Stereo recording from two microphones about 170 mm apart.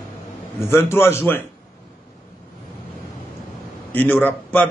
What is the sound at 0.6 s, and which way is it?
Speech, 15° left (ahead or behind).